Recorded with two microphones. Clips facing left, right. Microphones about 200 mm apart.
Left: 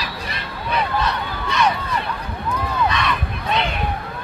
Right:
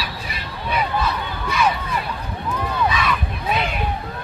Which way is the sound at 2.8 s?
5° right (ahead or behind).